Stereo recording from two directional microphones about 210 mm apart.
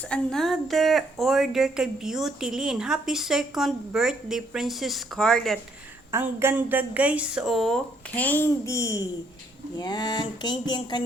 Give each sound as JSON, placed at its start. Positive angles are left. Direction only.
{"t": 0.1, "sound": "a woman's voice", "side_deg": 0}
{"t": 6.1, "sound": "a woman's voice", "side_deg": -10}